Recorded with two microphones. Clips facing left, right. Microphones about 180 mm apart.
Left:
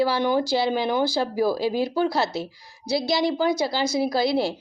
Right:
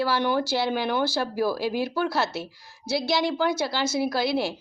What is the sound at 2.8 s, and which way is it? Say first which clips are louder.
Speech: left 2 dB; 60° right (ahead or behind).